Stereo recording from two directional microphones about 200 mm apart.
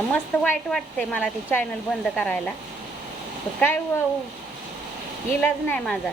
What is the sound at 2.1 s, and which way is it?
Speech, 5° left (ahead or behind).